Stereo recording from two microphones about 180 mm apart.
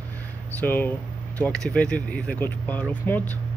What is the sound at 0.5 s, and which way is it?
Speech, 10° left (ahead or behind).